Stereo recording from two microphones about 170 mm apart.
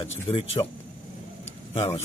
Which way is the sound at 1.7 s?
40° left (ahead or behind).